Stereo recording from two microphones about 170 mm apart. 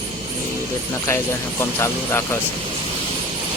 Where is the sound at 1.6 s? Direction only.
15° left (ahead or behind).